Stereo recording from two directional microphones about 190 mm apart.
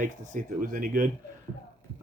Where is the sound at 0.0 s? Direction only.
45° right (ahead or behind).